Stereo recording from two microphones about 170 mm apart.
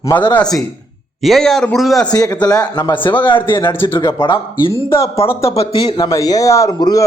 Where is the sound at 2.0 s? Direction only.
25° left (ahead or behind).